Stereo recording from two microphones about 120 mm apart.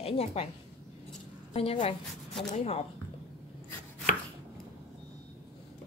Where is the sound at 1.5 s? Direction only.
60° left (ahead or behind).